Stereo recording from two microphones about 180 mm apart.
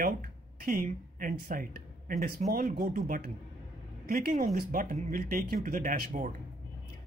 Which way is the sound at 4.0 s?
55° right (ahead or behind).